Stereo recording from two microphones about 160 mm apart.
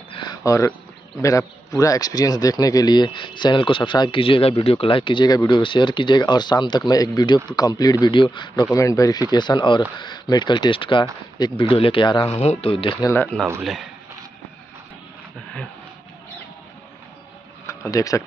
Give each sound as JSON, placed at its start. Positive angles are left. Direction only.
{"t": 0.1, "sound": "a sound", "side_deg": 25}
{"t": 1.2, "sound": "speech", "side_deg": 20}
{"t": 13.0, "sound": "speech", "side_deg": 15}
{"t": 13.6, "sound": "speech", "side_deg": 0}
{"t": 17.6, "sound": "speech", "side_deg": 20}